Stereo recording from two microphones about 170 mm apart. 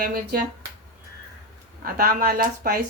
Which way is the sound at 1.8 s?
60° right (ahead or behind).